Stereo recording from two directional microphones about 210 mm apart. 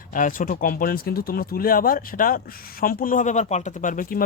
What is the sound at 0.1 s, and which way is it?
Speech, 40° left (ahead or behind).